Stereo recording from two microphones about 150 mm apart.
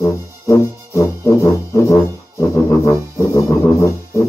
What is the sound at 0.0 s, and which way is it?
Music, 20° left (ahead or behind).